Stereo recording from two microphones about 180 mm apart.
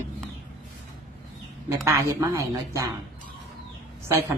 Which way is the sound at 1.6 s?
15° right (ahead or behind).